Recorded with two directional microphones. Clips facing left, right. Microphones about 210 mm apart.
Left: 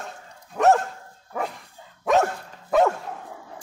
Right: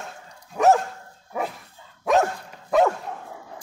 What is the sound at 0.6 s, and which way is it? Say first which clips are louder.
Dog: even; centre (ahead or behind).